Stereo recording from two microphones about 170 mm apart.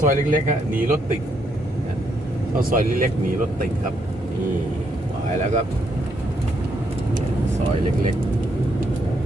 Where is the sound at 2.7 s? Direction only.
55° right (ahead or behind).